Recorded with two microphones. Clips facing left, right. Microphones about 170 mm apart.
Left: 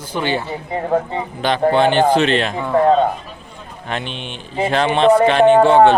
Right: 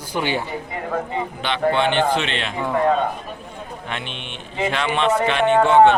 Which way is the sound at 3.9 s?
35° left (ahead or behind).